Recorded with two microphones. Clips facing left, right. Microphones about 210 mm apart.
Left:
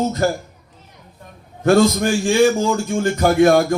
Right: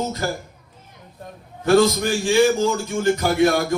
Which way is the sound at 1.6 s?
50° left (ahead or behind).